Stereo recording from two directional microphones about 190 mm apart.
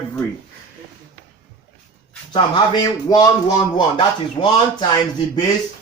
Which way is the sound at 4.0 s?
20° left (ahead or behind).